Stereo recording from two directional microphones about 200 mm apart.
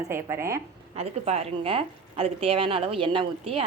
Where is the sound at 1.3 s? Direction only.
30° right (ahead or behind).